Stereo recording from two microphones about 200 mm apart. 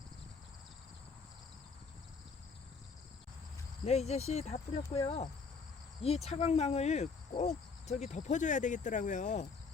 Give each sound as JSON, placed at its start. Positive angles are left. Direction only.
{"t": 3.8, "sound": "cricket", "side_deg": 35}